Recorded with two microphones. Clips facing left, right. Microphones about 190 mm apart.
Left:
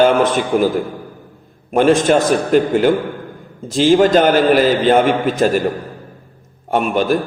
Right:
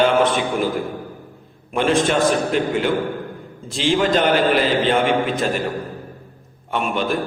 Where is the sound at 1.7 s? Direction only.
45° left (ahead or behind).